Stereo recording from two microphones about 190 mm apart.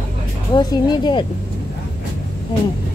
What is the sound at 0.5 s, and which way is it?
Speech, 20° left (ahead or behind).